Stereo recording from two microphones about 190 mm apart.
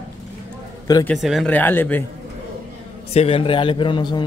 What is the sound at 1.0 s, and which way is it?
Speech, centre (ahead or behind).